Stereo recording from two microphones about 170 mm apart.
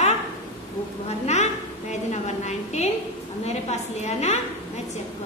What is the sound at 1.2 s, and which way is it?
A woman's voice, 40° left (ahead or behind).